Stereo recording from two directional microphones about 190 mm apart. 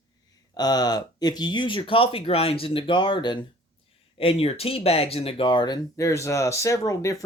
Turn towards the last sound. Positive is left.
turn(degrees=15)  # may be behind; listen again after turning